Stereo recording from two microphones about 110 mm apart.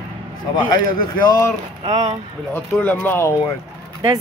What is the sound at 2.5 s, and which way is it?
Speech, 15° left (ahead or behind).